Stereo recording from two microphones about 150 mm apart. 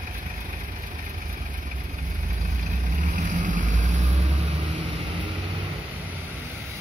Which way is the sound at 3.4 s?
60° right (ahead or behind).